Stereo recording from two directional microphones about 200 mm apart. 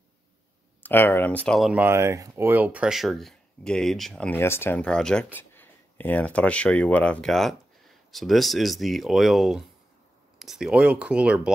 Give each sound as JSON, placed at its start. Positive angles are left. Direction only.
{"t": 0.8, "sound": "speech", "side_deg": 10}